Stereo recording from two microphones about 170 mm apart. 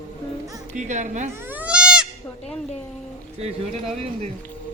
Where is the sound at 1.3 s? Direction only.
10° right (ahead or behind).